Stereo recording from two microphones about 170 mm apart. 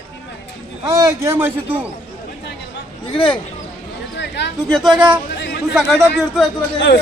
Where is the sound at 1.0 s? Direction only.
15° right (ahead or behind).